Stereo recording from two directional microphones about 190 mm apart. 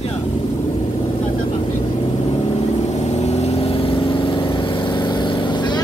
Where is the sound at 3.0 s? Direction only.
35° left (ahead or behind).